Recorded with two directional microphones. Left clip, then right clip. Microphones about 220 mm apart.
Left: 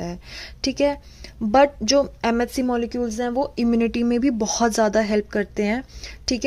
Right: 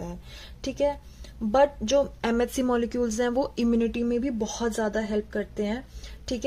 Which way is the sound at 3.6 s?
20° left (ahead or behind).